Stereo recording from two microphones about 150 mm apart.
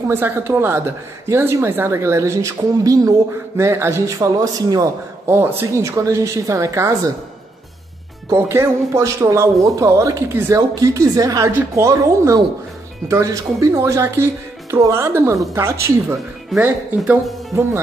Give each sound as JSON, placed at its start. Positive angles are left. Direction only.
{"t": 0.1, "sound": "speech", "side_deg": -15}
{"t": 8.3, "sound": "speech", "side_deg": -20}